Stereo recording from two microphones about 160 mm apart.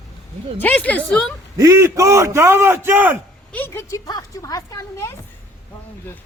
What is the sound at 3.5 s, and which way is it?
Speech, 15° left (ahead or behind).